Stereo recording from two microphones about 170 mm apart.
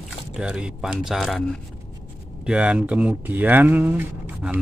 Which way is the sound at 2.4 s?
5° right (ahead or behind).